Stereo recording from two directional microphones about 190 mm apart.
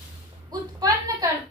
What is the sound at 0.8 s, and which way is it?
Speech, 20° right (ahead or behind).